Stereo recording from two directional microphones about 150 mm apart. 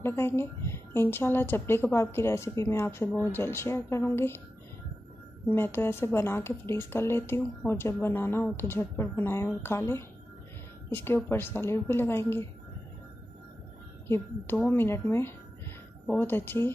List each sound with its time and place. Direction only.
0.0 s a woman's voice: 15° left (ahead or behind)
5.5 s a woman's voice: 15° left (ahead or behind)
14.0 s a woman's voice: 15° left (ahead or behind)